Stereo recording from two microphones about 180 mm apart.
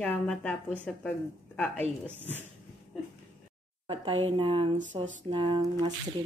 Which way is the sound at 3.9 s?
25° right (ahead or behind).